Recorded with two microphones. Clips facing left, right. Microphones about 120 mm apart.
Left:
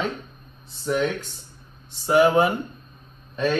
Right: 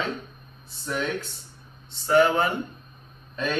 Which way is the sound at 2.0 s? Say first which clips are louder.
Left 3 dB; 10° left (ahead or behind).